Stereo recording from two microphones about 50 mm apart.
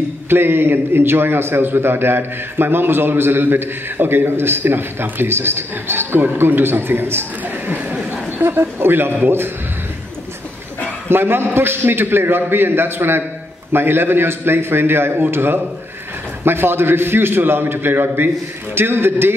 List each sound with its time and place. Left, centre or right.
0.3 s a man's voice: right
8.5 s a man's voice: right
11.1 s a man's voice: right